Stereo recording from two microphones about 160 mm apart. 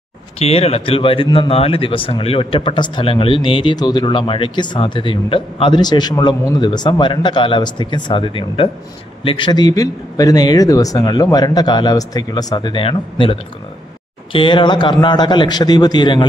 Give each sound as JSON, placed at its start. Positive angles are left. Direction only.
{"t": 0.4, "sound": "speech", "side_deg": 40}